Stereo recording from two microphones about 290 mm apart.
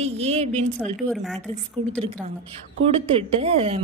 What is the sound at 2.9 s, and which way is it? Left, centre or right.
Speech, centre.